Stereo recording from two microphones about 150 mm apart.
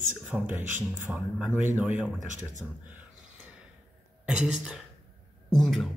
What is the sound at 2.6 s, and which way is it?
Speech, 5° left (ahead or behind).